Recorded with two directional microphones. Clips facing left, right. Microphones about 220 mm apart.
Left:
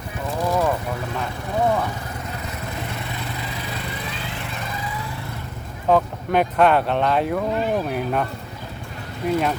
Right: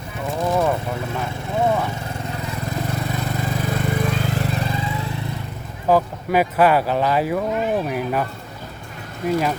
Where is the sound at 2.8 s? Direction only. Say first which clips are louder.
Right 5 dB; 45° right (ahead or behind); by 5.0 s 25° right (ahead or behind).